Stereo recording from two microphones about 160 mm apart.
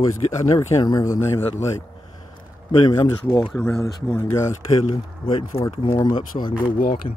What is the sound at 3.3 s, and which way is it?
Speech, 25° left (ahead or behind).